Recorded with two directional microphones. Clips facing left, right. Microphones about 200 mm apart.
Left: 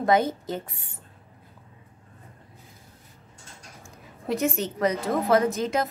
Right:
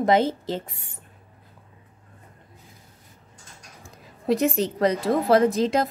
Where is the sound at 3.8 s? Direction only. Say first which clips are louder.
Right 7 dB; 35° right (ahead or behind).